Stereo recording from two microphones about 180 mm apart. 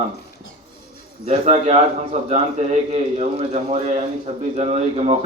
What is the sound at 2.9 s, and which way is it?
Speech, 40° right (ahead or behind).